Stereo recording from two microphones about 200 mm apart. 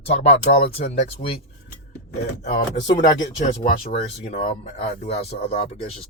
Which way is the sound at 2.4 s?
35° left (ahead or behind).